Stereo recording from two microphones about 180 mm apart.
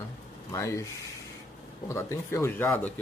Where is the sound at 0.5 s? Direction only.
15° left (ahead or behind).